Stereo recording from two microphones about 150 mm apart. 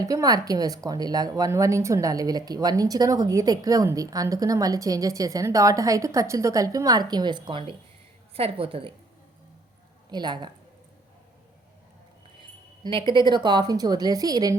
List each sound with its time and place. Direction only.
0.0 s a woman's voice: 25° right (ahead or behind)
10.1 s a woman's voice: 30° right (ahead or behind)
12.4 s a woman's voice: 35° right (ahead or behind)